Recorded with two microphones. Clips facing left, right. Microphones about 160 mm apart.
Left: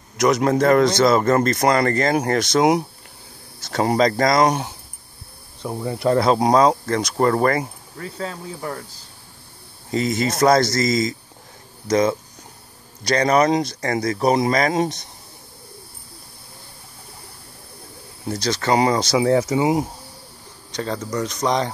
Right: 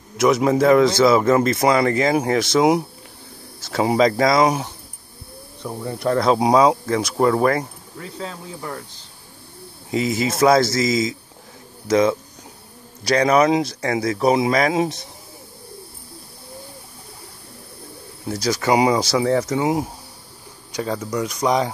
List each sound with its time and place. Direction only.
0.2 s speech: 5° right (ahead or behind)
5.7 s speech: 10° left (ahead or behind)
6.3 s speech: 5° right (ahead or behind)
18.2 s speech: 5° right (ahead or behind)
19.1 s speech: 5° left (ahead or behind)
20.7 s speech: 10° right (ahead or behind)